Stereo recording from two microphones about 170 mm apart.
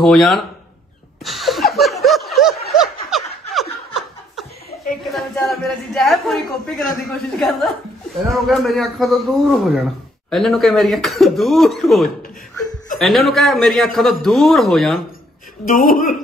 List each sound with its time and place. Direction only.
0.0 s a man's voice: centre (ahead or behind)
1.2 s a sound: centre (ahead or behind)
2.4 s snicker: centre (ahead or behind)
5.1 s a man's voice: centre (ahead or behind)
15.6 s a woman's voice: 55° left (ahead or behind)